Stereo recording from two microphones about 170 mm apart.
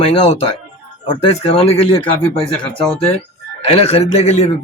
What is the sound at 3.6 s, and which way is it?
Speech, 35° left (ahead or behind).